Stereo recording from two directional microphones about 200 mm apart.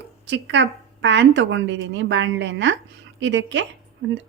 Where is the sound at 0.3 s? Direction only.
60° right (ahead or behind).